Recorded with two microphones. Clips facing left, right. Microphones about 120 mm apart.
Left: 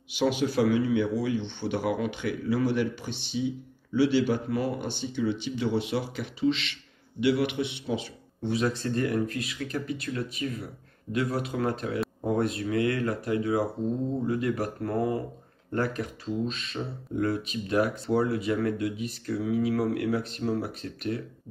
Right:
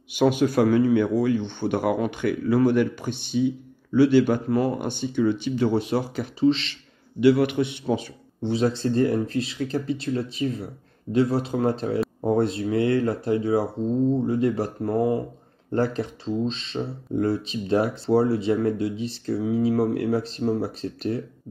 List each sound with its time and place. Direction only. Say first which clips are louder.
0.1 s speech: right 6 dB; 50° right (ahead or behind)
8.4 s speech: right 4 dB; 30° right (ahead or behind)